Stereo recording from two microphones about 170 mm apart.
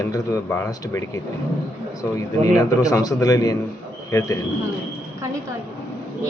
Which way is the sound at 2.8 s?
20° left (ahead or behind).